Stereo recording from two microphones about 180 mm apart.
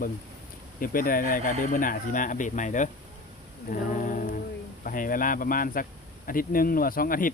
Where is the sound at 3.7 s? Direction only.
45° left (ahead or behind).